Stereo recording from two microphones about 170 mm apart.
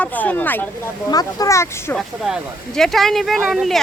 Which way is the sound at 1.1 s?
20° left (ahead or behind).